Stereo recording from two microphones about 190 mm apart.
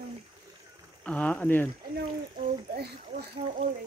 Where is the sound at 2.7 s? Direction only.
55° right (ahead or behind).